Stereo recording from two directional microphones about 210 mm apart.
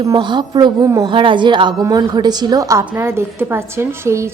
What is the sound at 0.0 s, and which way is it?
A woman's voice, 20° right (ahead or behind).